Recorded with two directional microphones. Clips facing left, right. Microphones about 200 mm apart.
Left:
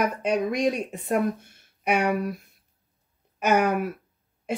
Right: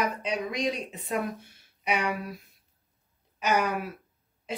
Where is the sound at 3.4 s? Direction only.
55° left (ahead or behind).